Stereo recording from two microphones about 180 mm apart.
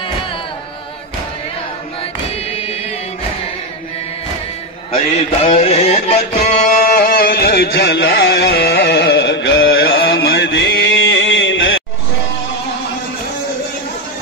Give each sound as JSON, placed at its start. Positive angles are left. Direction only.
{"t": 4.9, "sound": "music", "side_deg": 35}
{"t": 6.8, "sound": "music", "side_deg": 55}